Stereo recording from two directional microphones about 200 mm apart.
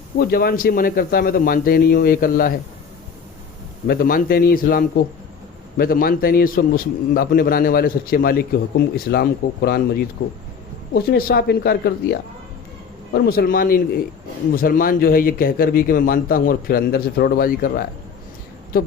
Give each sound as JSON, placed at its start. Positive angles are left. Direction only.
{"t": 0.2, "sound": "a man's voice", "side_deg": 50}
{"t": 3.8, "sound": "a man's voice", "side_deg": 45}